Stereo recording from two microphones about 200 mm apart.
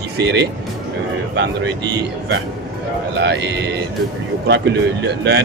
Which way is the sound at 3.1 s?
55° right (ahead or behind).